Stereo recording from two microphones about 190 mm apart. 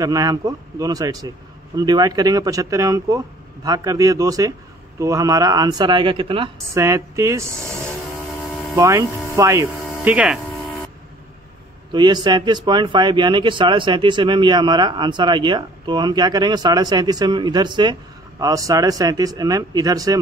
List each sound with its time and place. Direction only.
0.0 s speech: 20° right (ahead or behind)
6.7 s speech: 15° right (ahead or behind)
11.9 s speech: 25° right (ahead or behind)